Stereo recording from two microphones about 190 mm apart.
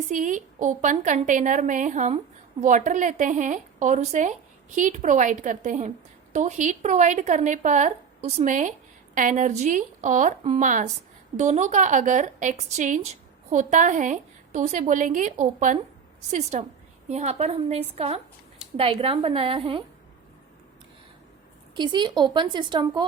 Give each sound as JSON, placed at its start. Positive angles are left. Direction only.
{"t": 0.1, "sound": "a woman's voice", "side_deg": -40}
{"t": 21.8, "sound": "a woman's voice", "side_deg": -25}